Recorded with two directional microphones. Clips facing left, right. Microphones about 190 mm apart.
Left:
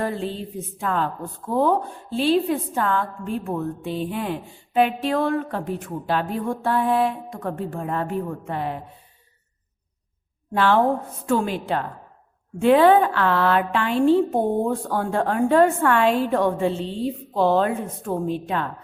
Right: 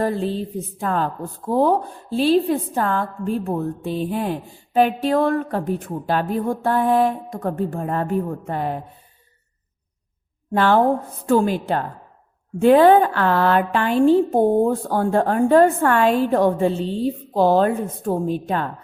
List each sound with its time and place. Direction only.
0.0 s a woman's voice: 40° right (ahead or behind)
10.5 s a woman's voice: 45° right (ahead or behind)